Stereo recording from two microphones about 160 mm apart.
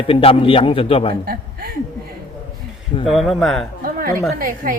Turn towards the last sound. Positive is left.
turn(degrees=-60)  # may be behind; listen again after turning